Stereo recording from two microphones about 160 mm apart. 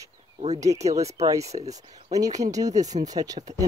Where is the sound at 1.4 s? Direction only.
45° right (ahead or behind).